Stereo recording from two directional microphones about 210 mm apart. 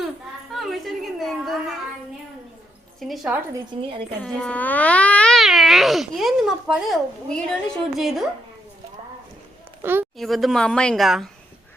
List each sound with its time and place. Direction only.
0.5 s cat: centre (ahead or behind)
3.0 s cat: centre (ahead or behind)
3.7 s speech: 25° right (ahead or behind)
4.2 s cat: 5° left (ahead or behind)
9.8 s a woman's voice: 10° right (ahead or behind)
10.2 s cat: centre (ahead or behind)